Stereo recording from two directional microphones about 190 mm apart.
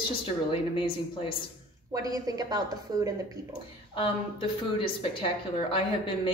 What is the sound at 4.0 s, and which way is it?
A woman's voice, 30° left (ahead or behind).